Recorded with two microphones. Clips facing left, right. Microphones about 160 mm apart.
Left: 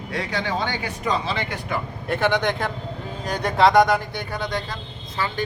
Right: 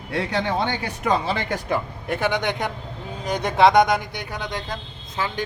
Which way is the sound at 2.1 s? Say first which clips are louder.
Left 2 dB; 10° right (ahead or behind).